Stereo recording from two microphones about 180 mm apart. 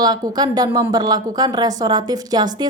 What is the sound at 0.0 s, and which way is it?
Speech, 20° right (ahead or behind).